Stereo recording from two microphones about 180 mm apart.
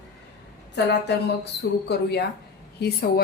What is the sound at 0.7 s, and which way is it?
A woman's voice, 70° left (ahead or behind).